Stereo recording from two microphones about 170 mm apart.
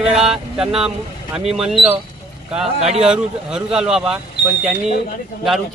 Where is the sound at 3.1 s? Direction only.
5° right (ahead or behind).